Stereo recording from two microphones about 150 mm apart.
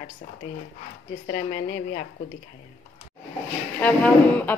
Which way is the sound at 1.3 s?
60° left (ahead or behind).